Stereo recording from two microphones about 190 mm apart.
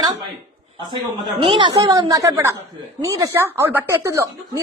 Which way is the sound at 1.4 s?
25° right (ahead or behind).